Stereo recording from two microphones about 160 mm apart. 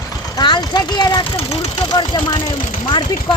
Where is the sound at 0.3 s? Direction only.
25° left (ahead or behind).